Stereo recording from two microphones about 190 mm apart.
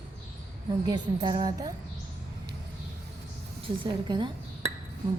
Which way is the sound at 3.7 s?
25° right (ahead or behind).